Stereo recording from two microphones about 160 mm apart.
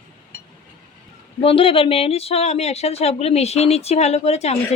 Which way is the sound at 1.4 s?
35° left (ahead or behind).